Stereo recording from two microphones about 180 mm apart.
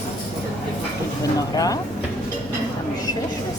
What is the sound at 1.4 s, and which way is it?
Speech, 20° left (ahead or behind).